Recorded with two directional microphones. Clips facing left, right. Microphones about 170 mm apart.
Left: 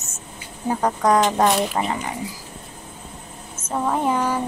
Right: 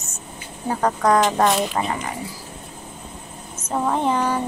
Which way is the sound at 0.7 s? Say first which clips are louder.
Even; 15° left (ahead or behind).